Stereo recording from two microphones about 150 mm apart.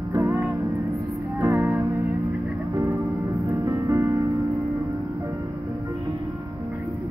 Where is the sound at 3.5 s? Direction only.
25° right (ahead or behind).